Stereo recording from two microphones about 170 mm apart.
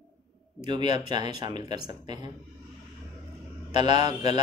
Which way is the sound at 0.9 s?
25° right (ahead or behind).